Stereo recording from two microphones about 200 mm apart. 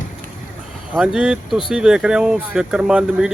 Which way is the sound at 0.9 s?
5° right (ahead or behind).